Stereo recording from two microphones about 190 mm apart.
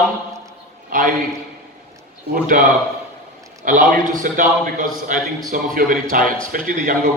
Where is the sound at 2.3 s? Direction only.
45° right (ahead or behind).